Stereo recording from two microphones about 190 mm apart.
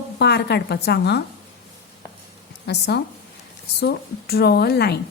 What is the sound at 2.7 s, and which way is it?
A woman's voice, 60° left (ahead or behind).